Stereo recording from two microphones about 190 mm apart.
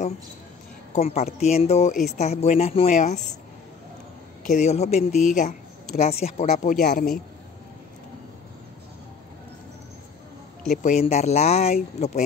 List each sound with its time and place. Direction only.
0.9 s speech: 35° left (ahead or behind)
4.5 s speech: 35° left (ahead or behind)
10.8 s speech: 35° left (ahead or behind)